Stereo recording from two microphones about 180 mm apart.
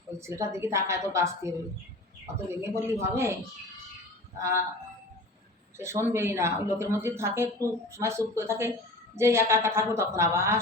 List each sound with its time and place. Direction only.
0.2 s speech: 15° right (ahead or behind)
4.4 s speech: 15° right (ahead or behind)
5.7 s speech: 15° right (ahead or behind)